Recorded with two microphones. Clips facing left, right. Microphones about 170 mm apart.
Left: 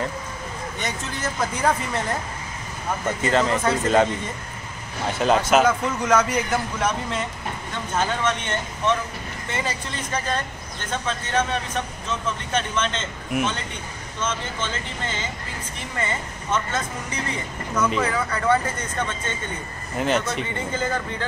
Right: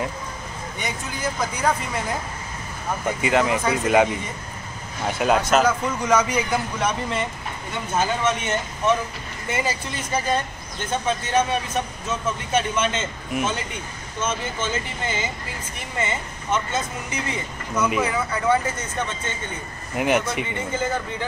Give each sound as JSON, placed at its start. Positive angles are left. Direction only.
{"t": 3.1, "sound": "speech", "side_deg": -10}
{"t": 5.2, "sound": "a man's voice", "side_deg": 0}
{"t": 20.0, "sound": "speech", "side_deg": -10}